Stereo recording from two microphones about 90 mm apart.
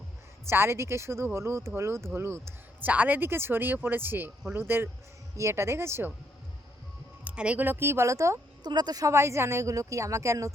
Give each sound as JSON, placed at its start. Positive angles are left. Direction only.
{"t": 0.4, "sound": "speech", "side_deg": -30}
{"t": 7.3, "sound": "speech", "side_deg": -15}
{"t": 8.6, "sound": "speech", "side_deg": -50}